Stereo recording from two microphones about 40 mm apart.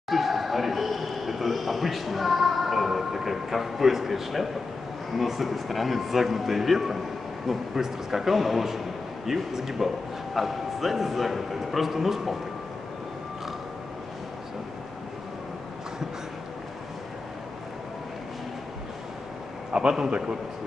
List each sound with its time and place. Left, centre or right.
0.1 s a man's voice: centre
19.7 s a sound: right
20.1 s a man's voice: right